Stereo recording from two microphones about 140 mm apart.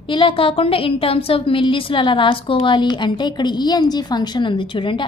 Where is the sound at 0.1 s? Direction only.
35° left (ahead or behind).